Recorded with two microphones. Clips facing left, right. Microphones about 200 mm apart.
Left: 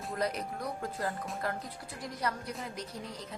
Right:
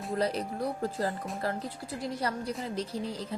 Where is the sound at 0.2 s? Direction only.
30° right (ahead or behind).